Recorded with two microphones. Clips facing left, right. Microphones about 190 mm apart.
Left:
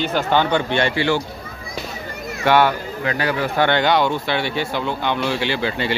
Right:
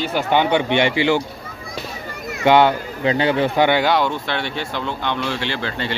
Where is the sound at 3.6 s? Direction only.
5° right (ahead or behind).